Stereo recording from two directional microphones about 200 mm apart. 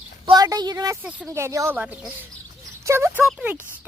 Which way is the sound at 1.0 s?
5° right (ahead or behind).